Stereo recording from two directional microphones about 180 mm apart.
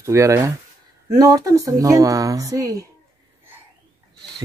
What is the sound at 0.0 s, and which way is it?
Speech, 15° right (ahead or behind).